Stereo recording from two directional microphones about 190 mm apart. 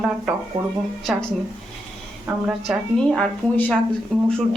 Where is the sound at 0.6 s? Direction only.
30° right (ahead or behind).